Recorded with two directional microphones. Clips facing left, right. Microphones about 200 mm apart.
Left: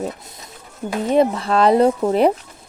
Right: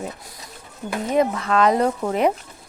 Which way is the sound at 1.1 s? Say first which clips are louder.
Left 3 dB; 30° left (ahead or behind).